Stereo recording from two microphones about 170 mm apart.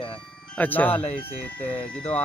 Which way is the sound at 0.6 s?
10° left (ahead or behind).